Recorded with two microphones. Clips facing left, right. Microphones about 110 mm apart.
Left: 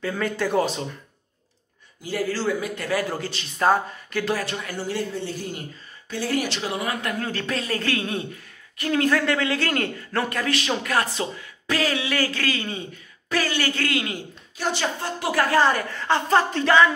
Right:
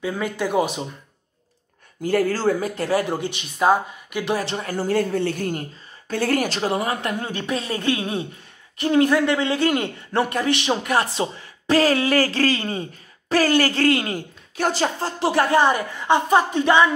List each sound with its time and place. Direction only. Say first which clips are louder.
0.0 s speech: right 1 dB; 10° right (ahead or behind)
2.0 s speech: right 5 dB; 50° right (ahead or behind); by 4.6 s 25° right (ahead or behind)
4.6 s speech: right 6 dB; 50° right (ahead or behind); by 16.9 s 20° right (ahead or behind)